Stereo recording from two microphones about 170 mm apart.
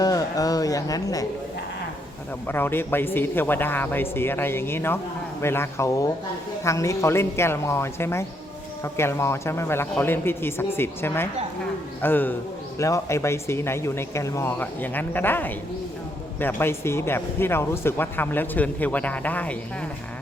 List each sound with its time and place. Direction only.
0.0 s speech: 20° left (ahead or behind)
2.5 s speech: 15° left (ahead or behind)